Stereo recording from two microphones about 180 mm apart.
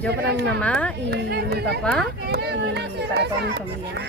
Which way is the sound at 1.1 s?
60° right (ahead or behind).